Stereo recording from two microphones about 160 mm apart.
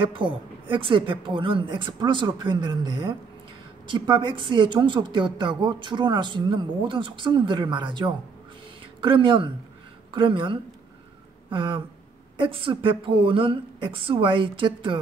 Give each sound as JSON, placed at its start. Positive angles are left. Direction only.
{"t": 0.0, "sound": "a woman's voice", "side_deg": -30}